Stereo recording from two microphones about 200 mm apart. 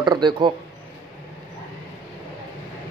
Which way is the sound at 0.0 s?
20° right (ahead or behind).